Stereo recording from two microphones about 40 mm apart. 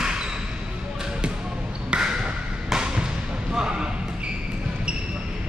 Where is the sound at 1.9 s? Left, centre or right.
Right.